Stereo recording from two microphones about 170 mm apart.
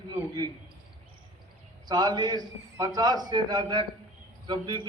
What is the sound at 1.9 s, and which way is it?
A man's voice, 25° right (ahead or behind).